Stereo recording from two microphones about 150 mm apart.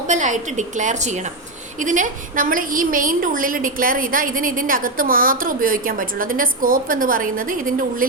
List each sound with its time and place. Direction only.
0.1 s a woman's voice: 55° right (ahead or behind)